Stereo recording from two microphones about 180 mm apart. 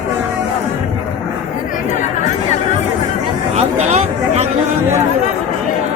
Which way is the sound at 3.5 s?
35° right (ahead or behind).